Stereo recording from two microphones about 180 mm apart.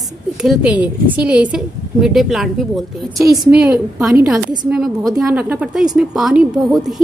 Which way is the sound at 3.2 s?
20° right (ahead or behind).